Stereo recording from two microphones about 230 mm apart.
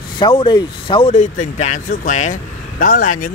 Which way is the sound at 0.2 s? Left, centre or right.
Left.